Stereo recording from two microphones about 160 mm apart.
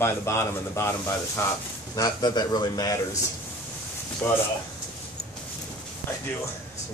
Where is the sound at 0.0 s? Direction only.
15° left (ahead or behind).